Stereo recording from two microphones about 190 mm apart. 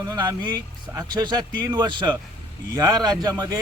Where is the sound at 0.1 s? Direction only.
20° right (ahead or behind).